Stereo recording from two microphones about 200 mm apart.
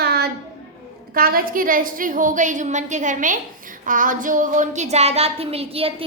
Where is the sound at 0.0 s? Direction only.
50° right (ahead or behind).